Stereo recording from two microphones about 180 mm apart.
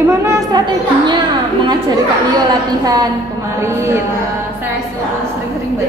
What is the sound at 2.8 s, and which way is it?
A woman's voice, 20° right (ahead or behind).